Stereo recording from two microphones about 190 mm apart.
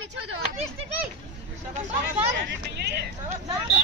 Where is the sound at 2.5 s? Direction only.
60° right (ahead or behind).